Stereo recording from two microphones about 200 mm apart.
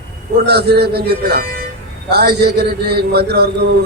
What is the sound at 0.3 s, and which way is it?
A man's voice, 55° right (ahead or behind).